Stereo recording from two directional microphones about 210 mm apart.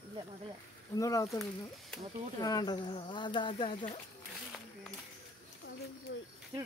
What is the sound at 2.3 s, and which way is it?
Speech, 20° left (ahead or behind).